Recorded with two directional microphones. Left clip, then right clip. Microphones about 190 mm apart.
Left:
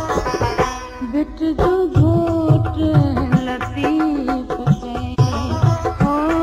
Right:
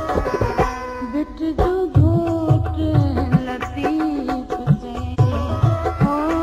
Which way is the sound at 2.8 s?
15° right (ahead or behind).